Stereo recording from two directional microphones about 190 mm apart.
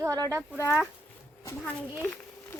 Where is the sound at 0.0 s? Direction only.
15° right (ahead or behind).